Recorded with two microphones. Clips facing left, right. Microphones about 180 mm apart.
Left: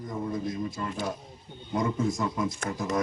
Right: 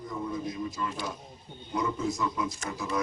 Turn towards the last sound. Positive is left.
turn(degrees=45)  # may be behind; listen again after turning